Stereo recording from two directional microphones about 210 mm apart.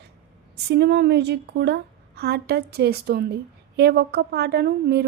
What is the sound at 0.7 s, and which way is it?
A woman's voice, 50° right (ahead or behind).